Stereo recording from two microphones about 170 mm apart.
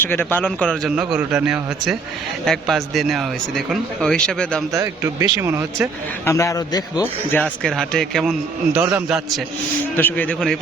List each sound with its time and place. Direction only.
0.0 s speech: 10° left (ahead or behind)
0.9 s speech: 5° right (ahead or behind)
4.7 s speech: 20° right (ahead or behind)
6.2 s speech: 20° left (ahead or behind)
7.3 s speech: 5° left (ahead or behind)
8.7 s speech: 10° right (ahead or behind)
10.0 s speech: 10° left (ahead or behind)